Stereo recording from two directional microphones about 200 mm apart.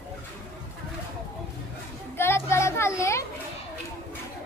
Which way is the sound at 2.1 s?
10° left (ahead or behind).